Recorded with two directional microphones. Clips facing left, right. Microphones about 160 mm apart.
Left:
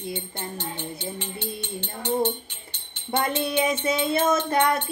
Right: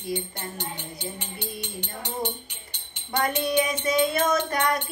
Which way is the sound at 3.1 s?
25° left (ahead or behind).